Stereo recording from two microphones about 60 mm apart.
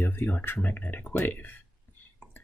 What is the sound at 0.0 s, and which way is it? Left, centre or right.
Speech, left.